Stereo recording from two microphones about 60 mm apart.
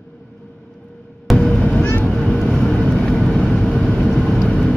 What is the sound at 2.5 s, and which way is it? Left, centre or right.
Vehicle, centre.